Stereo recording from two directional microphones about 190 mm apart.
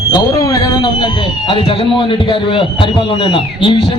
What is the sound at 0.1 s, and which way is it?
Speech, 20° left (ahead or behind).